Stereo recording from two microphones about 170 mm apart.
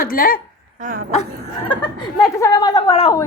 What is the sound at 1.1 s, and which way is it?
Speech, 35° left (ahead or behind).